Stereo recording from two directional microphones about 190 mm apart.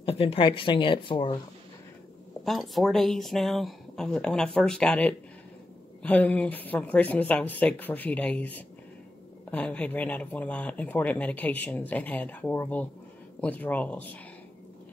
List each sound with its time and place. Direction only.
0.0 s speech: 30° left (ahead or behind)
2.4 s speech: centre (ahead or behind)